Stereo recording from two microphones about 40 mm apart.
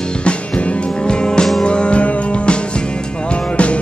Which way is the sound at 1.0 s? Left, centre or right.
Left.